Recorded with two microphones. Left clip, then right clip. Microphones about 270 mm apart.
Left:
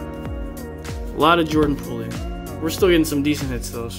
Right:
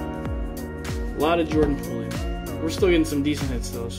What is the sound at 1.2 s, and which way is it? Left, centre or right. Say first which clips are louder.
Speech: left 5 dB; centre.